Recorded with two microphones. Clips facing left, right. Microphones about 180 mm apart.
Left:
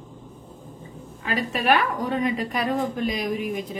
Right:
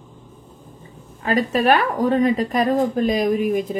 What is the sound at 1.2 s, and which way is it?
A woman's voice, 40° right (ahead or behind).